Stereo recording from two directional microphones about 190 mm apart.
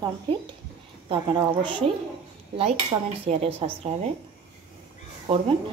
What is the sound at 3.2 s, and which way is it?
Speech, 35° right (ahead or behind).